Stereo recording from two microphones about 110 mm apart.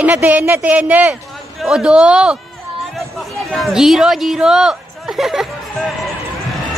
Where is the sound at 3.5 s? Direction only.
Centre (ahead or behind).